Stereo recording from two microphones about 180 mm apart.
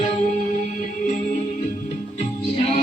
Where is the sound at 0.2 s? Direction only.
40° left (ahead or behind).